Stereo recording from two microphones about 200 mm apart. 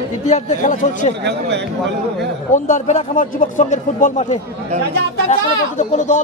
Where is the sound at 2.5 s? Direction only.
40° left (ahead or behind).